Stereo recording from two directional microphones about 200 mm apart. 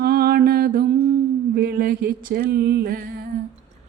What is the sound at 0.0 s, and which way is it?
Mantra, 50° right (ahead or behind).